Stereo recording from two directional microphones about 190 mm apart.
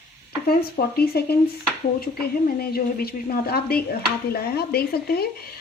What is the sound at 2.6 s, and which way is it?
A woman's voice, 55° left (ahead or behind).